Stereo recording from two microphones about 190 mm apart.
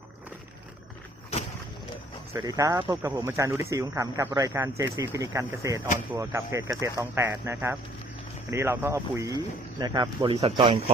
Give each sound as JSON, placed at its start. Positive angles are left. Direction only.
{"t": 2.3, "sound": "speech", "side_deg": -15}